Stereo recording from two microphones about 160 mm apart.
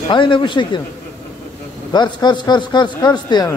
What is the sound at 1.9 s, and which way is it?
A man's voice, 25° left (ahead or behind).